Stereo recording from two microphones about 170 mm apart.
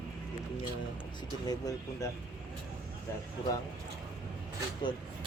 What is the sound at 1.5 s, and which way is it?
Speech, 20° left (ahead or behind).